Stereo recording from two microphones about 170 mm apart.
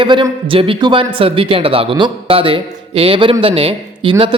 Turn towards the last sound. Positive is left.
turn(degrees=-30)  # may be behind; listen again after turning